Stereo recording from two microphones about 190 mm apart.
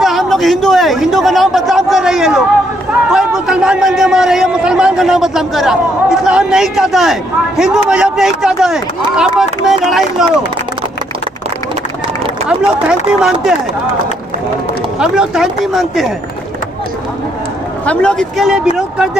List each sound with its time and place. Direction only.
0.0 s a man's voice: centre (ahead or behind)
12.4 s a man's voice: 5° right (ahead or behind)
15.0 s a man's voice: 5° right (ahead or behind)
17.8 s a man's voice: 5° left (ahead or behind)